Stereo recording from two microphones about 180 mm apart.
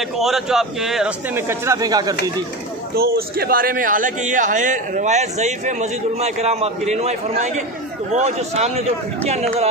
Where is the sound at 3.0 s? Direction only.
60° right (ahead or behind).